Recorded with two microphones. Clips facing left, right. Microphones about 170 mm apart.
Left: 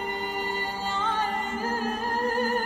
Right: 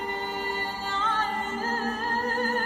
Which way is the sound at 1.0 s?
15° left (ahead or behind).